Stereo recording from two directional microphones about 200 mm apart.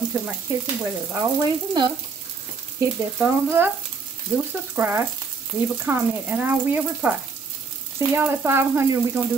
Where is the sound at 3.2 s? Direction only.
10° right (ahead or behind).